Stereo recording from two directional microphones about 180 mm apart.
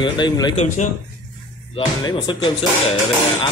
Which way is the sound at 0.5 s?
40° left (ahead or behind).